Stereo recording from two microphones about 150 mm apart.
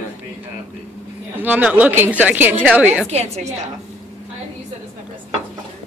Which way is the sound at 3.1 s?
45° right (ahead or behind).